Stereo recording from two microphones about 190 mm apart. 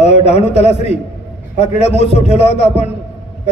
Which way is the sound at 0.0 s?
35° left (ahead or behind).